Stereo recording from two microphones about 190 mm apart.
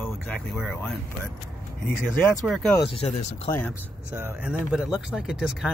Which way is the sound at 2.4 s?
Centre (ahead or behind).